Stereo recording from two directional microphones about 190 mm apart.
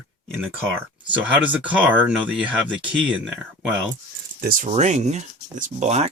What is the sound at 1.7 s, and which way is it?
Speech, 10° right (ahead or behind).